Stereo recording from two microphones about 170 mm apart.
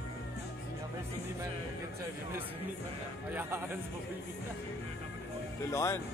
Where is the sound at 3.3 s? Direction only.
10° right (ahead or behind).